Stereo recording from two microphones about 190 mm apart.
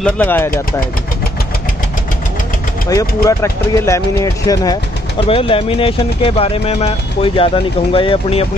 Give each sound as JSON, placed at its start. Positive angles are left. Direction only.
{"t": 0.0, "sound": "speech", "side_deg": 10}
{"t": 2.9, "sound": "speech", "side_deg": 15}
{"t": 5.2, "sound": "speech", "side_deg": 30}